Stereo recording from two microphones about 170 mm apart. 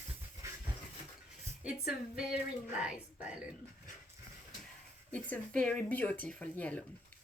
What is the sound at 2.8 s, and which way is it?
Speech, 5° right (ahead or behind).